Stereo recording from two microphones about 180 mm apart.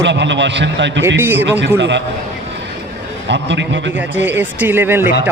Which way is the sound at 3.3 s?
80° right.